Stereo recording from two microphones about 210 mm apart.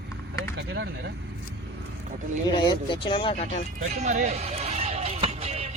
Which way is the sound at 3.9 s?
35° right (ahead or behind).